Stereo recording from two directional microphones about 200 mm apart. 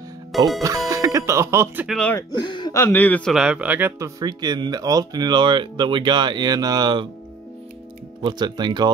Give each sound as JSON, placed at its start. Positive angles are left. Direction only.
{"t": 0.6, "sound": "speech", "side_deg": -15}
{"t": 1.9, "sound": "speech", "side_deg": 5}
{"t": 2.3, "sound": "speech", "side_deg": 25}
{"t": 8.2, "sound": "speech", "side_deg": -20}